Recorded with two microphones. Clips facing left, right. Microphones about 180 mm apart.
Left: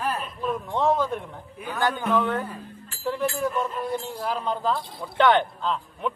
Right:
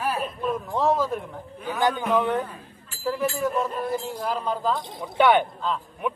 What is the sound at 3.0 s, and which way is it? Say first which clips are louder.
A man's voice: right 1 dB; centre (ahead or behind).